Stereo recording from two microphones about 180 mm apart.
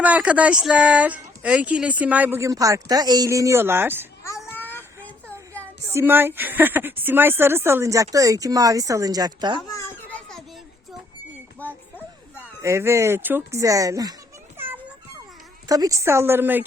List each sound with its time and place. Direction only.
0.0 s speech: 10° right (ahead or behind)
5.9 s speech: 15° right (ahead or behind)
9.7 s children playing: 10° left (ahead or behind)
11.6 s music: 10° left (ahead or behind)
12.6 s speech: 15° right (ahead or behind)
15.7 s speech: 20° right (ahead or behind)